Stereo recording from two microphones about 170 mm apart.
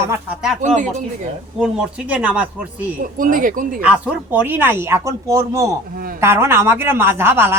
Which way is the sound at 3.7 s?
5° right (ahead or behind).